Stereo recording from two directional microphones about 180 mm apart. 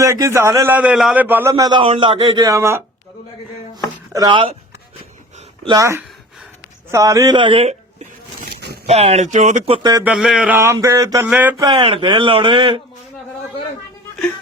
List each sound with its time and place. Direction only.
0.0 s a man's voice: 15° right (ahead or behind)
4.1 s a man's voice: 25° right (ahead or behind)
5.6 s a man's voice: 20° right (ahead or behind); by 8.0 s 35° right (ahead or behind)
8.4 s zipper: 60° right (ahead or behind)
8.9 s speech: 35° right (ahead or behind)
10.0 s a man's voice: 5° right (ahead or behind)
11.6 s a man's voice: 30° right (ahead or behind)